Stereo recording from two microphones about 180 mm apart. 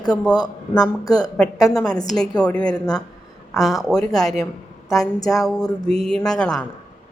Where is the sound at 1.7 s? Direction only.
5° left (ahead or behind).